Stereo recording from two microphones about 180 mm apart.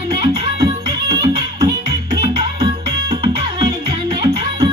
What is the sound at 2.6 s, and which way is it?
Music, 30° right (ahead or behind).